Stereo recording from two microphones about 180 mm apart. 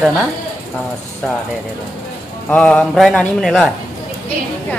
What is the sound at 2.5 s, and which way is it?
Speech, 5° left (ahead or behind).